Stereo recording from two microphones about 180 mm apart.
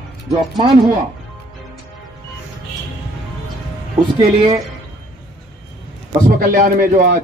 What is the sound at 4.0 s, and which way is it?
Speech, 25° right (ahead or behind).